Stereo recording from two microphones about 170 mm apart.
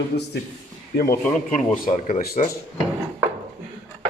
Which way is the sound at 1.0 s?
15° left (ahead or behind).